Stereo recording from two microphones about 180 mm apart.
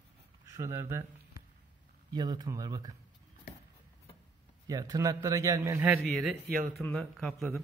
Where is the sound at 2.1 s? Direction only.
25° right (ahead or behind).